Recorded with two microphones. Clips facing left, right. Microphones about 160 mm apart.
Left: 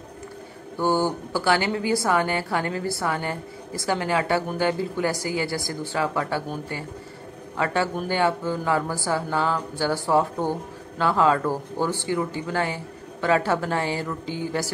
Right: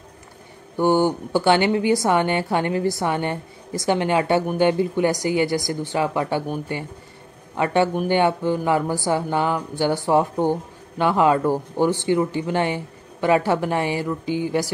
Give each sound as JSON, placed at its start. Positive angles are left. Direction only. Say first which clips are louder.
{"t": 0.7, "sound": "a woman's voice", "louder": "right 4 dB", "side_deg": -20}